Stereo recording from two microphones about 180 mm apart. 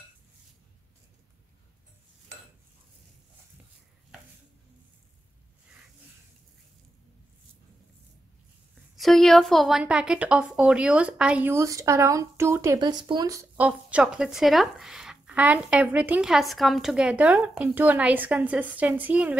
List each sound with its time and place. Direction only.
8.9 s a woman's voice: centre (ahead or behind)